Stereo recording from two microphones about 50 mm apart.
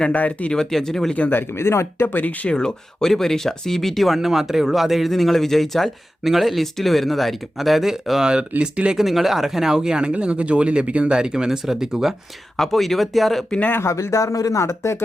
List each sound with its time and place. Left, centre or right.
0.1 s speech: left
0.5 s speech: centre
1.3 s speech: left
2.1 s speech: left
2.5 s speech: centre
8.3 s speech: centre
9.0 s speech: centre
12.5 s speech: centre
13.8 s speech: left